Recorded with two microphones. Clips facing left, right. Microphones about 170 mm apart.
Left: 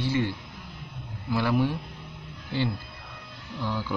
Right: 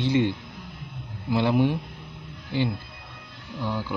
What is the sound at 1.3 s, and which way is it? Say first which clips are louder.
Speech: right 3 dB; 20° right (ahead or behind).